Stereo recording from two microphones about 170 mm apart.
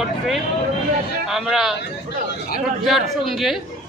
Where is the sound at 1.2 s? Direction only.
Centre (ahead or behind).